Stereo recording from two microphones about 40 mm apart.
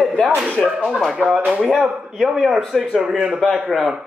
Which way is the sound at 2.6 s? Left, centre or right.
Centre.